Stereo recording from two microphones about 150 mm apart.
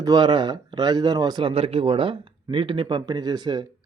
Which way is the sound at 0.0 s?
25° right (ahead or behind).